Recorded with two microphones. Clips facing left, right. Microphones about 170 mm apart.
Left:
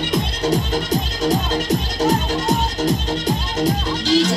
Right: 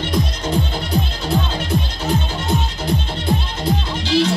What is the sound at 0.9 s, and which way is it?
Music, 40° left (ahead or behind).